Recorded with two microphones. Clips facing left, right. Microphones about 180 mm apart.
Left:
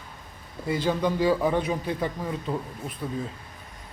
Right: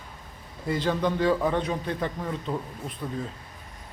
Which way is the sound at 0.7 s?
5° left (ahead or behind).